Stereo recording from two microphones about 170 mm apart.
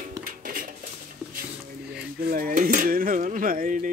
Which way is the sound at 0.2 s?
55° right (ahead or behind).